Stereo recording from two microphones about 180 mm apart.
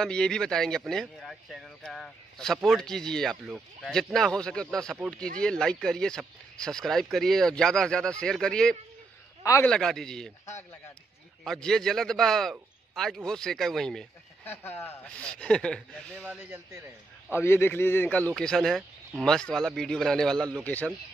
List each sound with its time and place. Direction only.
0.0 s speech: 5° left (ahead or behind)
9.4 s a man's voice: 20° left (ahead or behind)
9.7 s speech: centre (ahead or behind)
11.4 s speech: 5° left (ahead or behind)
16.3 s speech: 10° right (ahead or behind)
17.3 s speech: 15° left (ahead or behind)